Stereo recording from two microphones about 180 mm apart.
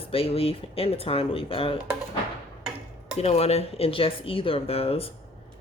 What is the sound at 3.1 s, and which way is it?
Speech, 35° left (ahead or behind).